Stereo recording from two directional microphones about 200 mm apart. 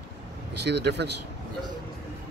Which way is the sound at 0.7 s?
55° right (ahead or behind).